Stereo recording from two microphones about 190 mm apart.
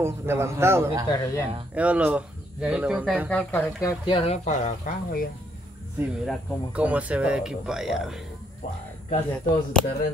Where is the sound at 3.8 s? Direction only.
25° left (ahead or behind); by 5.3 s 45° left (ahead or behind).